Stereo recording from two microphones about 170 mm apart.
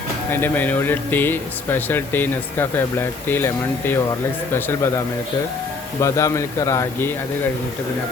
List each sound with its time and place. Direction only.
0.3 s speech: 10° left (ahead or behind)
6.0 s speech: 20° left (ahead or behind)